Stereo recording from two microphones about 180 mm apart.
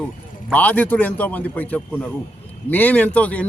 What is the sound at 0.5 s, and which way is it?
A man's voice, 10° left (ahead or behind).